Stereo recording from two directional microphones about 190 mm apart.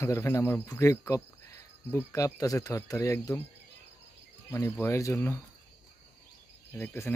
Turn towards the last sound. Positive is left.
turn(degrees=10)  # may be behind; listen again after turning